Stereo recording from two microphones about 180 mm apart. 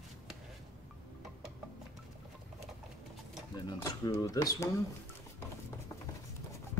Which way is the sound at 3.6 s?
20° left (ahead or behind).